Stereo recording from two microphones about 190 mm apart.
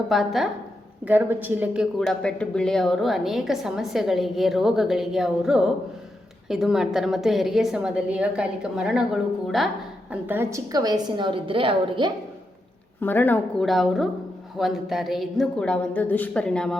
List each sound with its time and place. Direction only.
0.1 s speech: centre (ahead or behind)
10.1 s a woman's voice: 10° right (ahead or behind)
13.0 s speech: 10° left (ahead or behind)